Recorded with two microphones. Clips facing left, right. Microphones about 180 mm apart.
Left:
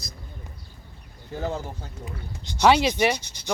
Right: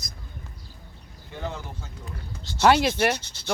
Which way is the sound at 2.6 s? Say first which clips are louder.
Left 1 dB; 5° right (ahead or behind).